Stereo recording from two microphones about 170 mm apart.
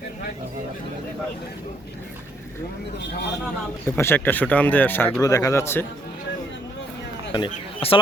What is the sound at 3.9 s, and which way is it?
Speech, 15° left (ahead or behind).